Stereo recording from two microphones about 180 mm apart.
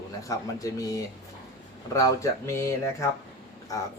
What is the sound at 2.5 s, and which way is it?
Speech, 15° left (ahead or behind).